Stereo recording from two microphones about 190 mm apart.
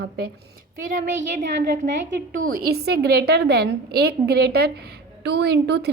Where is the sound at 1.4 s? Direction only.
40° right (ahead or behind).